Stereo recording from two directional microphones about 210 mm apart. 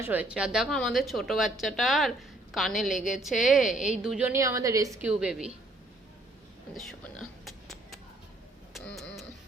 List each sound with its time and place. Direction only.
0.0 s a woman's voice: 10° right (ahead or behind)
7.4 s a sound: centre (ahead or behind)
8.7 s music: 5° left (ahead or behind)